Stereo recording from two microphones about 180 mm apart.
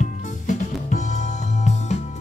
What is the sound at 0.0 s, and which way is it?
Music, 40° left (ahead or behind).